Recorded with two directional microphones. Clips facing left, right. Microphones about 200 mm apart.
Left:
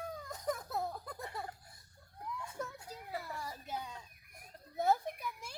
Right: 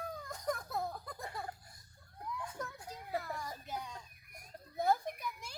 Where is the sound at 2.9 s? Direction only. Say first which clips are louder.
Right 3 dB; 5° left (ahead or behind).